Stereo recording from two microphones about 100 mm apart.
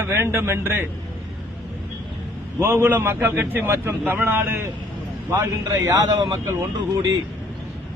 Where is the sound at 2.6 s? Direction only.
20° right (ahead or behind).